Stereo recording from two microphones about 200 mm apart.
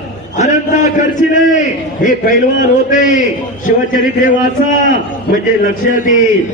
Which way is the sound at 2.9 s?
40° left (ahead or behind).